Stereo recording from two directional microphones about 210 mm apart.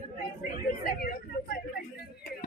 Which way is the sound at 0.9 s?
45° left (ahead or behind).